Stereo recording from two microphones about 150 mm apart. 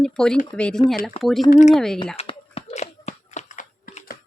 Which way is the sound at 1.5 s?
55° left (ahead or behind).